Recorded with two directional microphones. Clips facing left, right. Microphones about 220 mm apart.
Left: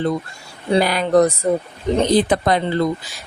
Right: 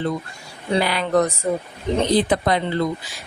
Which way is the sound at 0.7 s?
45° left (ahead or behind).